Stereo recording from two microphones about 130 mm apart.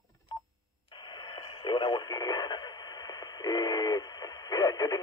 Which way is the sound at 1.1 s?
40° left (ahead or behind).